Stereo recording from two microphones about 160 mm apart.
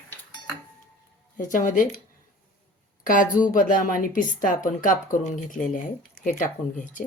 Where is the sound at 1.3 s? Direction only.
55° left (ahead or behind).